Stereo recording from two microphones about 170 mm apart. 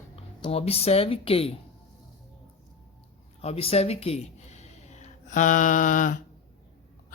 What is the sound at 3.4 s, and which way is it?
Speech, 35° left (ahead or behind).